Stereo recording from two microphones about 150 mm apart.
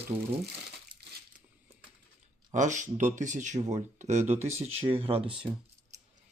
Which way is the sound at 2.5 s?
55° right (ahead or behind).